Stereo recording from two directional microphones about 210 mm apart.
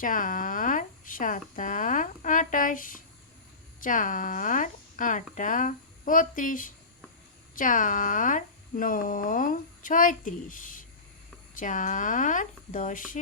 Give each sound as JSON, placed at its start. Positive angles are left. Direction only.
{"t": 0.0, "sound": "speech", "side_deg": 40}